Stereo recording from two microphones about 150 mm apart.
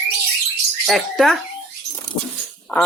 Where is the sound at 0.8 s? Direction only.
Centre (ahead or behind).